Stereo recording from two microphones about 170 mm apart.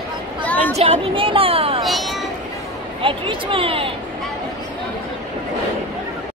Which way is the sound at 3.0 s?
30° right (ahead or behind).